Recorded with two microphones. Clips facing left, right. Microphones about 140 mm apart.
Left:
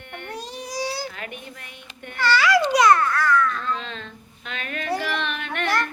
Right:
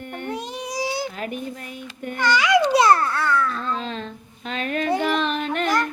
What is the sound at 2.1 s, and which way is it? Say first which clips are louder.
Speech: right 1 dB; 15° right (ahead or behind).